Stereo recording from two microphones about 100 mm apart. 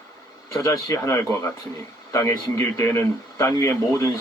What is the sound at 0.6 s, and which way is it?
Speech, 30° left (ahead or behind).